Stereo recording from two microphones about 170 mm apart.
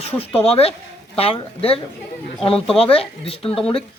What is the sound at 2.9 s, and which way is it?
Speech, 35° left (ahead or behind).